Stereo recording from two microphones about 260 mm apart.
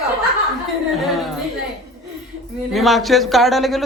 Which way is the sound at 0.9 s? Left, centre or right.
Centre.